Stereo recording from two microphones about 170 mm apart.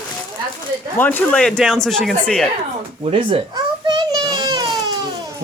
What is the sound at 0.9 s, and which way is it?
Speech, 10° left (ahead or behind).